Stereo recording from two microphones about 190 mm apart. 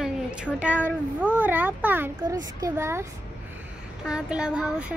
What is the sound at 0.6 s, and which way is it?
A child's voice, 5° right (ahead or behind).